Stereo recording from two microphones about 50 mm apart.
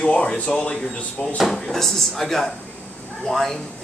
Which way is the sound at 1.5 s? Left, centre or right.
Centre.